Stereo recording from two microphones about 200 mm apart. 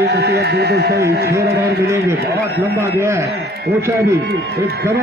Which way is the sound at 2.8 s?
15° right (ahead or behind).